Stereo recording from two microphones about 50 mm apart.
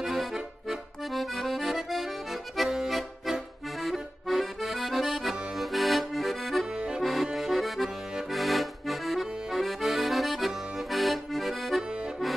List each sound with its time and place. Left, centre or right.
0.0 s accordion: centre
6.7 s accordion: centre
7.0 s accordion: centre